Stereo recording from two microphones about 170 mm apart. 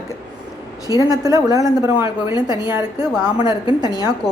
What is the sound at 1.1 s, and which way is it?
Speech, 20° right (ahead or behind).